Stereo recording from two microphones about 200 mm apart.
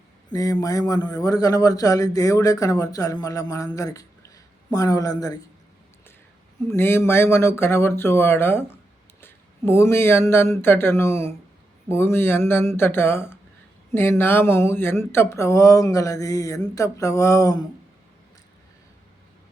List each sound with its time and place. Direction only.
0.3 s a man's voice: 15° left (ahead or behind)
6.7 s speech: 10° left (ahead or behind)